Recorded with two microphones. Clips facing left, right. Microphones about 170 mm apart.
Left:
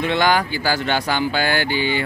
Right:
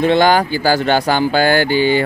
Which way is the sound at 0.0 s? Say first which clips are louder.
Right 6 dB; 35° right (ahead or behind).